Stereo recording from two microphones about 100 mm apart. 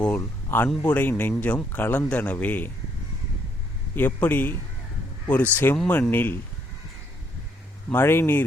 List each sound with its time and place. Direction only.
0.2 s a man's voice: 25° left (ahead or behind)
3.9 s a man's voice: 20° left (ahead or behind)
6.0 s speech: 20° left (ahead or behind)
7.9 s speech: 20° left (ahead or behind)